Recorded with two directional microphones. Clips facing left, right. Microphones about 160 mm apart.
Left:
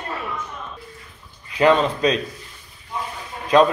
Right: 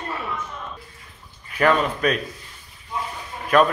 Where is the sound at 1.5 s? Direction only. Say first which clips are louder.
Left 3 dB; 20° left (ahead or behind).